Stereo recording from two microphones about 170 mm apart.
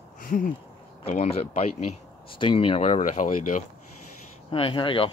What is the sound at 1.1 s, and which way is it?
Speech, 40° left (ahead or behind).